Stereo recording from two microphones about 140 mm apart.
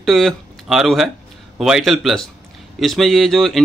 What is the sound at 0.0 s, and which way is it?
Speech, centre (ahead or behind).